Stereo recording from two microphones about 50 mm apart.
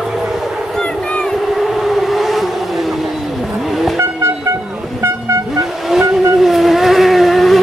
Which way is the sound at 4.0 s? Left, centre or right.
Right.